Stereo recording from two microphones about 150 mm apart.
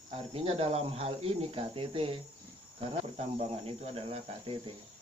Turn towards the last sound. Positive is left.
turn(degrees=-40)  # may be behind; listen again after turning